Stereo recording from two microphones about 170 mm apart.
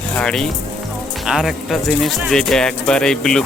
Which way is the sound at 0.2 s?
5° left (ahead or behind).